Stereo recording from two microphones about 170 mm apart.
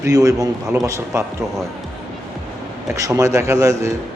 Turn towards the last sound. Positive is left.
turn(degrees=-20)  # may be behind; listen again after turning